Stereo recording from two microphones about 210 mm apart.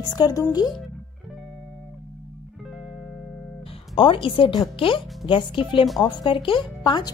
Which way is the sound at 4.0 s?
25° left (ahead or behind).